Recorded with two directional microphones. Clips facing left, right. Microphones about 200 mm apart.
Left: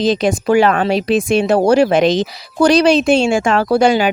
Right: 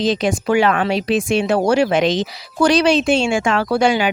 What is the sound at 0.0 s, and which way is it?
Speech, 40° left (ahead or behind).